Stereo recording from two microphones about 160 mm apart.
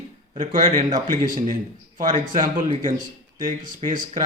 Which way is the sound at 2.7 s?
55° right (ahead or behind).